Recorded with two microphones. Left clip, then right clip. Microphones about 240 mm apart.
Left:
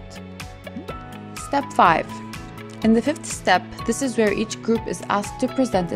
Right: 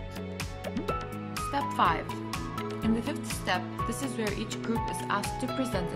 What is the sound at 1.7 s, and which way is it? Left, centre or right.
Speech, left.